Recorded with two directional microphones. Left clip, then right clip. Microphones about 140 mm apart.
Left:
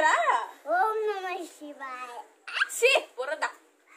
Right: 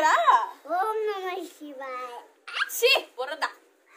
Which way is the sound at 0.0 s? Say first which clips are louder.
Right 4 dB; 10° right (ahead or behind).